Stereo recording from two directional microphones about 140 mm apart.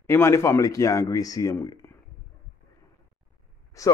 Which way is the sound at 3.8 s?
25° left (ahead or behind).